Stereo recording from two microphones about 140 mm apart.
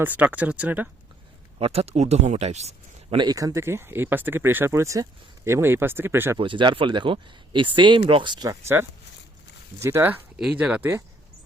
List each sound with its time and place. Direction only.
0.0 s speech: 10° right (ahead or behind)
1.5 s speech: 45° right (ahead or behind)
3.2 s speech: 25° right (ahead or behind)
6.4 s speech: 35° right (ahead or behind)
8.6 s speech: 15° right (ahead or behind)